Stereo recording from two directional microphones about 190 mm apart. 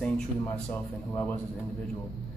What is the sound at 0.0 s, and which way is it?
A man's voice, 5° left (ahead or behind).